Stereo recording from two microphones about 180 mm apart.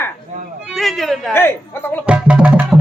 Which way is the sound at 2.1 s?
5° right (ahead or behind).